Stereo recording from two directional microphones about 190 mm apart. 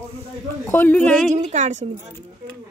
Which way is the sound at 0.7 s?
10° left (ahead or behind).